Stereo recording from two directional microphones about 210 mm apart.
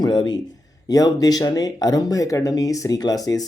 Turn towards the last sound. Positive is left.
turn(degrees=15)  # may be behind; listen again after turning